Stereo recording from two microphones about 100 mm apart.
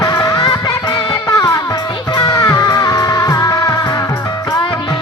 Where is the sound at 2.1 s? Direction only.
50° left (ahead or behind).